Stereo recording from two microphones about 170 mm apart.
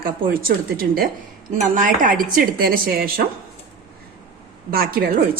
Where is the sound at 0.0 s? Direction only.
60° right (ahead or behind).